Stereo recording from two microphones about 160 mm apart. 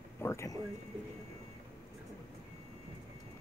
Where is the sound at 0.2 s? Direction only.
15° left (ahead or behind).